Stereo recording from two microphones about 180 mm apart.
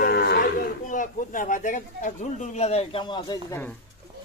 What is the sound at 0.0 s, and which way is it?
Cattle, 65° left (ahead or behind).